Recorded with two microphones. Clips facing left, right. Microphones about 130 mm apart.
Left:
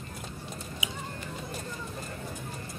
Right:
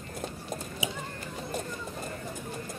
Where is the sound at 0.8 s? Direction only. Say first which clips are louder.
Right 4 dB; 30° right (ahead or behind).